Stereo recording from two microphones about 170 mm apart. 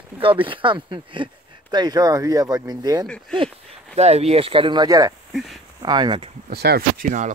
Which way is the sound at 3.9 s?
40° right (ahead or behind).